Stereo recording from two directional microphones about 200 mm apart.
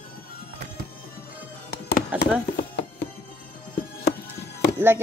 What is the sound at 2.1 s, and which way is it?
Chop, 5° right (ahead or behind).